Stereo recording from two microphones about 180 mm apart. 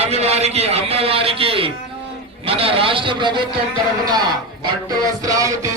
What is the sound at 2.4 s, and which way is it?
A man's voice, 30° right (ahead or behind).